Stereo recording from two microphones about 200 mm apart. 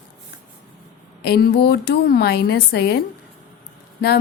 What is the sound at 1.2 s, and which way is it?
A woman's voice, 50° left (ahead or behind).